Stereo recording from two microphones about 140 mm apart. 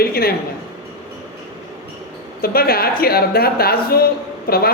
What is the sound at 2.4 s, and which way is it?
A woman's voice, 90° left.